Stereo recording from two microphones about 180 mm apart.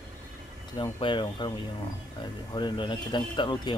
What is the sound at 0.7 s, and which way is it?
Speech, 25° left (ahead or behind).